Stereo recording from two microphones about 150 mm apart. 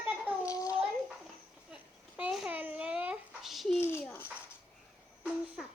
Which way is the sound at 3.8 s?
15° left (ahead or behind).